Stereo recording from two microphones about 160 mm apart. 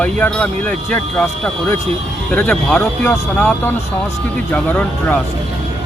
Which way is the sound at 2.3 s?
10° left (ahead or behind).